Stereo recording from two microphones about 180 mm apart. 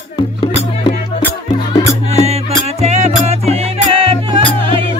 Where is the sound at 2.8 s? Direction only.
35° right (ahead or behind).